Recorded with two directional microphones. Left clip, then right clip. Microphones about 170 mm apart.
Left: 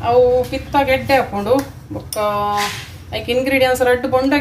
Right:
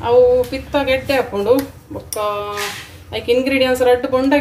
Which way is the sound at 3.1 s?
45° right (ahead or behind).